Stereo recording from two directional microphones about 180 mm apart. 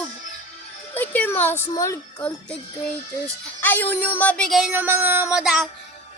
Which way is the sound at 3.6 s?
10° left (ahead or behind).